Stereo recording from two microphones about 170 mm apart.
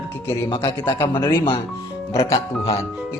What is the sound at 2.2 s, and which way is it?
Speech, 35° left (ahead or behind).